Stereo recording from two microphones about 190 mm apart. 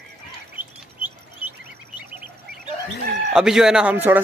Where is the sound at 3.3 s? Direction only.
5° right (ahead or behind).